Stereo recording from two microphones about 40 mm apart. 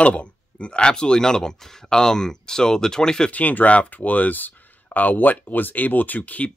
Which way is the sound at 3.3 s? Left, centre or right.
Left.